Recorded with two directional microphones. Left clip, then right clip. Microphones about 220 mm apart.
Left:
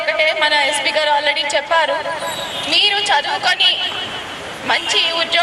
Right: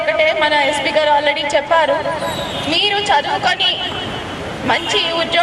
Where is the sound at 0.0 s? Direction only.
10° right (ahead or behind).